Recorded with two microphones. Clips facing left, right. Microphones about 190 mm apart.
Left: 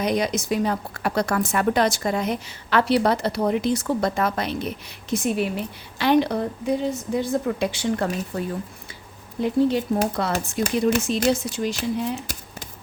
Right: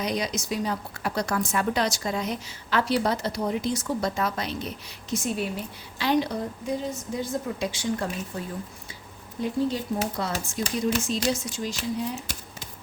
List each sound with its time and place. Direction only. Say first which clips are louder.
0.0 s a woman's voice: left 6 dB; 55° left (ahead or behind)